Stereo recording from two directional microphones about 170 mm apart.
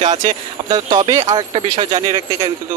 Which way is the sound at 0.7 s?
25° right (ahead or behind).